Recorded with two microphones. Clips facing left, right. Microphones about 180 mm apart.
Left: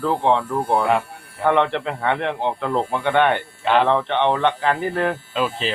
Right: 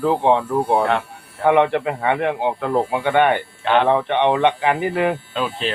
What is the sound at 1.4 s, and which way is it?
A man's voice, 10° right (ahead or behind).